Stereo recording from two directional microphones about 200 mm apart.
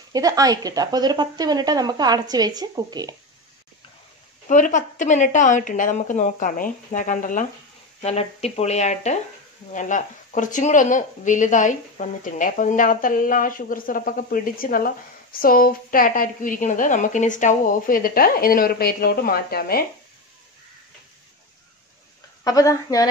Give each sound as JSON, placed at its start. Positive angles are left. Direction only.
{"t": 0.1, "sound": "speech", "side_deg": -15}
{"t": 4.5, "sound": "speech", "side_deg": 40}
{"t": 8.0, "sound": "speech", "side_deg": 30}
{"t": 22.4, "sound": "speech", "side_deg": 15}